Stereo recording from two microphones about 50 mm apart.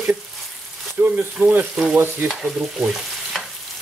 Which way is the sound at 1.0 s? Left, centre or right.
Right.